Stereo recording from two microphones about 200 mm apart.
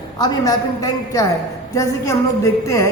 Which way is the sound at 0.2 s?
20° left (ahead or behind).